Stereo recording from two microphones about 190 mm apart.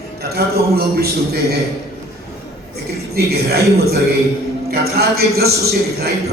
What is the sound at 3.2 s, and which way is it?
A man's voice, 55° right (ahead or behind).